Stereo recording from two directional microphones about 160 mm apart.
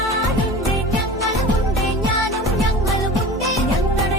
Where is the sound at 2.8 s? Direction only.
Centre (ahead or behind).